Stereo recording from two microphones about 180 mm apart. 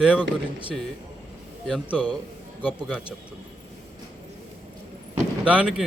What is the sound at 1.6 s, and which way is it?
Speech, 5° right (ahead or behind).